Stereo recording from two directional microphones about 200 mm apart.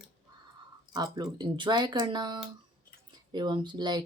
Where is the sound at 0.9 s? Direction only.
20° right (ahead or behind).